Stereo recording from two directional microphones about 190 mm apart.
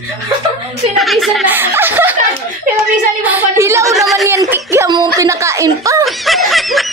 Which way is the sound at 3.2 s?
10° right (ahead or behind).